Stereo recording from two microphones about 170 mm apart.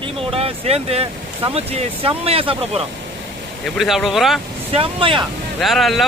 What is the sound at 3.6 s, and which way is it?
Speech, centre (ahead or behind).